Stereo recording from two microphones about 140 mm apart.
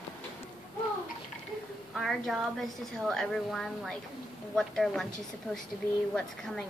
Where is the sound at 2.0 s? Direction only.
Centre (ahead or behind).